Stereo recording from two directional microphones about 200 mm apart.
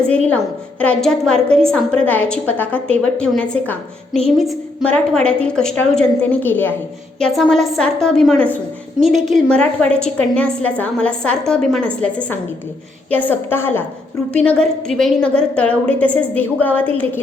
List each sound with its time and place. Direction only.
0.8 s a woman's voice: 5° left (ahead or behind)